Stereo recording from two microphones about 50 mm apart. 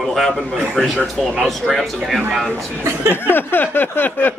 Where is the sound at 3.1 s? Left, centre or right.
Left.